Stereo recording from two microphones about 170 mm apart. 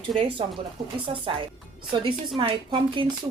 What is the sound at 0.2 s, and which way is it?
Speech, 30° right (ahead or behind).